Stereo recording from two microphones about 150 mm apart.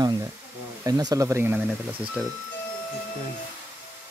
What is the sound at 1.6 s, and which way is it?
Speech, 5° right (ahead or behind).